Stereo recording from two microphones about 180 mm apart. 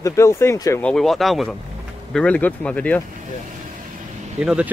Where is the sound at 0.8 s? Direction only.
Centre (ahead or behind).